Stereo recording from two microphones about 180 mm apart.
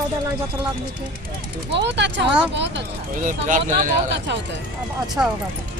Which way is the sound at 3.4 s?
45° right (ahead or behind).